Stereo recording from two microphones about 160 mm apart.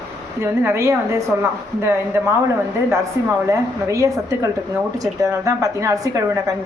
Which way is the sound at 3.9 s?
20° right (ahead or behind).